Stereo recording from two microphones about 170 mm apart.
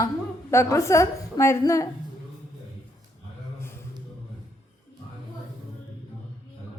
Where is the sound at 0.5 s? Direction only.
15° left (ahead or behind).